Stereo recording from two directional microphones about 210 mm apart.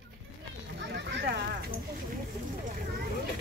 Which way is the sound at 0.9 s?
50° right (ahead or behind).